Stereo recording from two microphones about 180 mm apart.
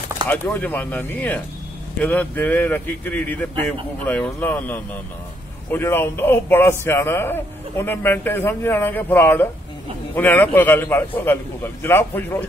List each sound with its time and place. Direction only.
0.3 s a man's voice: 10° left (ahead or behind)